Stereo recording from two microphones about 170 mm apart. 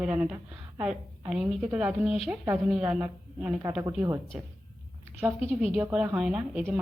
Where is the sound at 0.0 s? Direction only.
10° right (ahead or behind).